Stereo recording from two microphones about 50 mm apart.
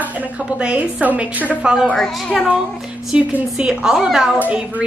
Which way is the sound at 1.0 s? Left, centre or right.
Right.